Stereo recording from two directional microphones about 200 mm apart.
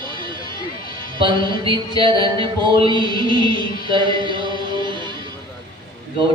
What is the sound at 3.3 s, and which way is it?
Music, 25° right (ahead or behind).